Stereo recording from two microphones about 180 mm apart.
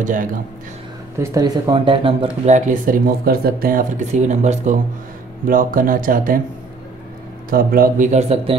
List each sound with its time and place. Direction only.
0.0 s speech: 45° right (ahead or behind)
1.1 s speech: 15° right (ahead or behind); by 3.8 s 55° right (ahead or behind)
4.1 s speech: 40° right (ahead or behind)
7.4 s speech: 55° right (ahead or behind); by 8.5 s 35° right (ahead or behind)